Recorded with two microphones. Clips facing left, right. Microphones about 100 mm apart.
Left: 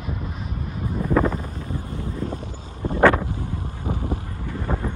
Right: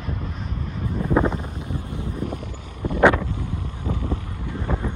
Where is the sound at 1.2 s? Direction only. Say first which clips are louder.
Even; 15° right (ahead or behind).